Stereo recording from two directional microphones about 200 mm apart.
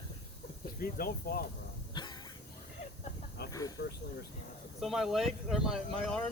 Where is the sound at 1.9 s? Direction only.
20° left (ahead or behind).